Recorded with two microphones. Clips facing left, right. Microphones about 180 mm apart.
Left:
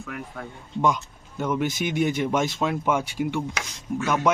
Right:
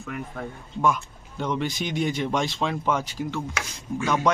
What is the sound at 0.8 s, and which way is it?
Speech, 20° left (ahead or behind).